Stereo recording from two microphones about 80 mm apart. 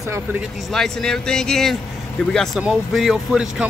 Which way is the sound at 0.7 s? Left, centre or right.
Centre.